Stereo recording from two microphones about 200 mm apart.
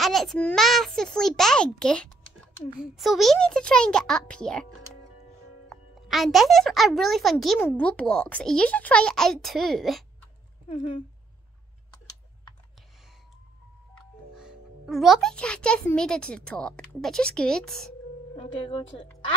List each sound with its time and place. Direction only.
0.0 s speech: centre (ahead or behind)
5.7 s speech: centre (ahead or behind)
10.7 s speech: 30° left (ahead or behind)
14.3 s speech: centre (ahead or behind)
18.3 s speech: 30° left (ahead or behind)